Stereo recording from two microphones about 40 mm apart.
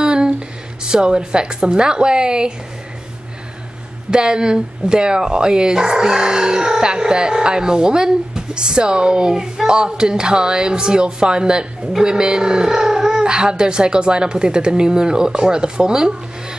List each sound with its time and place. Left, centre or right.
0.0 s a sound: right
0.8 s speech: right
4.1 s speech: right